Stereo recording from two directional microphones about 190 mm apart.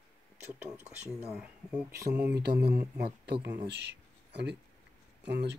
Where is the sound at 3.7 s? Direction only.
65° right (ahead or behind).